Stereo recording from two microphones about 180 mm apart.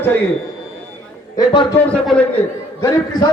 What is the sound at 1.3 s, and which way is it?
Speech, 30° left (ahead or behind).